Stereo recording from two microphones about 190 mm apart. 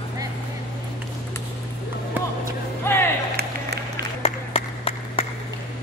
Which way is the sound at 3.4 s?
60° right (ahead or behind).